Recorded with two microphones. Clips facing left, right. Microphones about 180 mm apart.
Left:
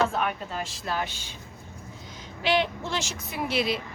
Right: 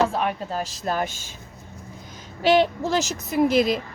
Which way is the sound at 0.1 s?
35° right (ahead or behind).